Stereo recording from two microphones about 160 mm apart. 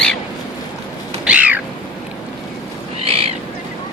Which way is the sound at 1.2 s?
5° right (ahead or behind).